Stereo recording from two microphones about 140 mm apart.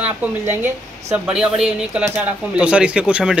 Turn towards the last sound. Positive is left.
turn(degrees=-5)  # may be behind; listen again after turning